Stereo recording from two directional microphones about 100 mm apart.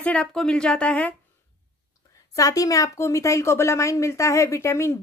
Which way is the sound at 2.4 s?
35° left (ahead or behind).